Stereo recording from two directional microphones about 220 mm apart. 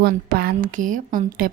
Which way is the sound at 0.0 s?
45° right (ahead or behind).